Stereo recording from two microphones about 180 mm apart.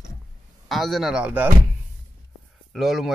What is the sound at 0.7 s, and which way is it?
Speech, centre (ahead or behind).